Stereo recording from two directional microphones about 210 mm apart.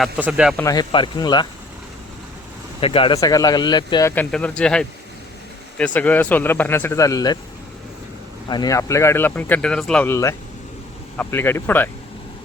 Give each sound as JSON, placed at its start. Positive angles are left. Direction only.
{"t": 0.0, "sound": "speech", "side_deg": -5}
{"t": 0.5, "sound": "speech", "side_deg": 15}
{"t": 2.8, "sound": "speech", "side_deg": 25}
{"t": 4.1, "sound": "speech", "side_deg": 5}
{"t": 8.4, "sound": "speech", "side_deg": 20}